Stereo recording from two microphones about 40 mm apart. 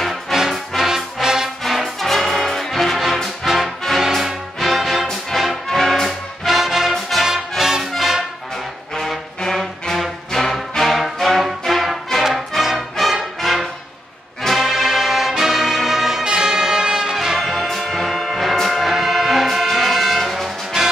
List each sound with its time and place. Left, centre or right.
0.0 s music: centre
1.6 s music: centre
5.7 s music: centre
8.9 s brass instrument: centre
10.3 s music: centre
14.6 s brass instrument: centre
17.4 s music: centre